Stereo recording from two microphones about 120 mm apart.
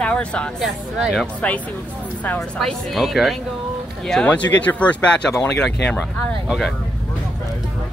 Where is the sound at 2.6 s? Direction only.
Centre (ahead or behind).